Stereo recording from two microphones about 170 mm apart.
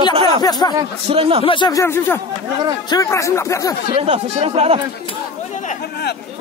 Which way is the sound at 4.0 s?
35° right (ahead or behind).